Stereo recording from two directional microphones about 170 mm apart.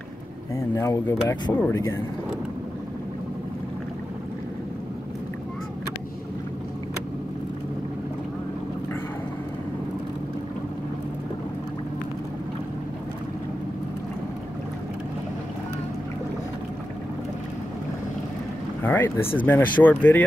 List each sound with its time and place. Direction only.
0.6 s speech: 15° left (ahead or behind)
18.8 s a sound: 10° left (ahead or behind)
19.3 s speech: 10° left (ahead or behind)